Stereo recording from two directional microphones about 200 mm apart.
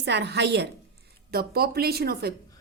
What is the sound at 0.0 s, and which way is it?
A woman's voice, 55° right (ahead or behind).